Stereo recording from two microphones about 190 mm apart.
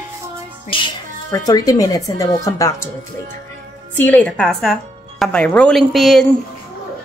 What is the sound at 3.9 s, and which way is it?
Speech, 10° left (ahead or behind).